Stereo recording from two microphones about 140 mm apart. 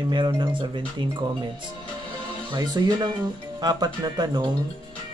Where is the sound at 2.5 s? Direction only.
30° right (ahead or behind).